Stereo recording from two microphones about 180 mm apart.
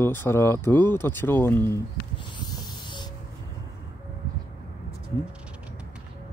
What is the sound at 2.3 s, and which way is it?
Hiss, 25° left (ahead or behind).